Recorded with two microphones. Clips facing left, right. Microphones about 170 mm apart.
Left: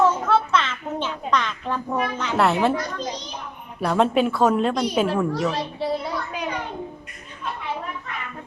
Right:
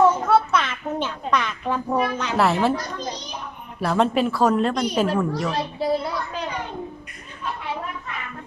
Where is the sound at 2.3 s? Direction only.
Centre (ahead or behind).